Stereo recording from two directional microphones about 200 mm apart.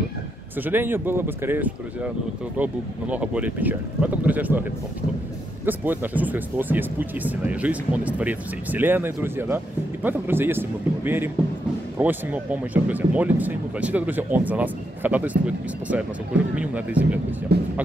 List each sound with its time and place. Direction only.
0.6 s speech: 10° right (ahead or behind)
5.7 s speech: 10° right (ahead or behind)
17.5 s speech: 55° right (ahead or behind)